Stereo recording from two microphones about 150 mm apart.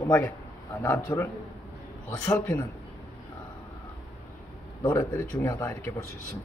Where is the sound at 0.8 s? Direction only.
15° left (ahead or behind).